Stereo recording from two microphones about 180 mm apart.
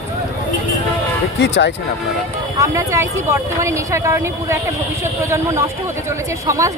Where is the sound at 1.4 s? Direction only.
75° left (ahead or behind).